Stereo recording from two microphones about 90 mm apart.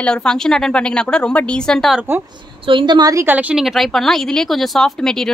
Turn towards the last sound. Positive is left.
turn(degrees=5)  # may be behind; listen again after turning